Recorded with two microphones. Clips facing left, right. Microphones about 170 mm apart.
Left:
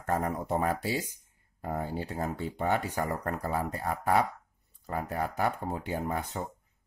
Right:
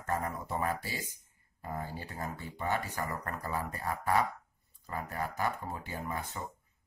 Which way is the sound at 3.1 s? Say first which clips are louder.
Left 5 dB; 55° left (ahead or behind).